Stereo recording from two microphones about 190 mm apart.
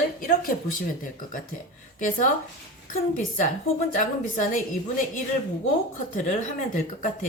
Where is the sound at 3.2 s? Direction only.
40° left (ahead or behind).